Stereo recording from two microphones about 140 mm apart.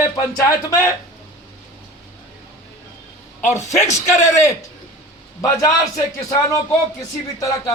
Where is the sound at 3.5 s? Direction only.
20° left (ahead or behind).